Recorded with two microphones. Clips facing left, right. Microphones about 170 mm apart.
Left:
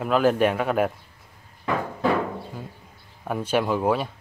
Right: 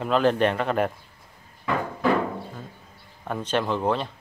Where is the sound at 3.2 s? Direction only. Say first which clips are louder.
Left 2 dB; 10° left (ahead or behind).